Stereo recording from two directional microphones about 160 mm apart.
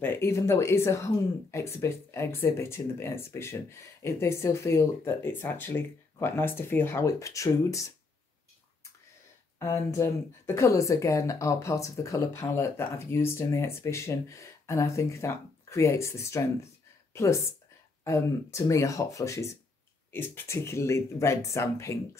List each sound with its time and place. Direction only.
0.0 s speech: 15° left (ahead or behind)
9.6 s speech: 20° left (ahead or behind)